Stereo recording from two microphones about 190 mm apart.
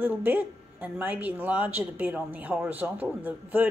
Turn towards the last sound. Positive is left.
turn(degrees=-10)  # may be behind; listen again after turning